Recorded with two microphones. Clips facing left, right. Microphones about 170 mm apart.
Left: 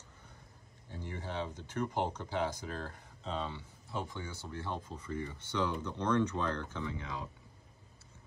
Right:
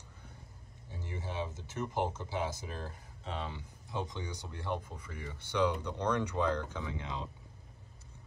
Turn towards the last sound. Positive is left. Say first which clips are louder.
# even
turn(degrees=-20)  # may be behind; listen again after turning